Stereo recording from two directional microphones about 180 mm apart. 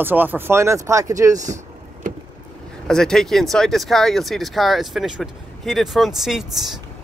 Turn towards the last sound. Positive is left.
turn(degrees=0)  # may be behind; listen again after turning